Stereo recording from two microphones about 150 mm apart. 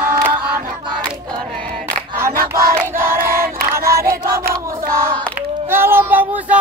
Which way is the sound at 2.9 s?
15° right (ahead or behind).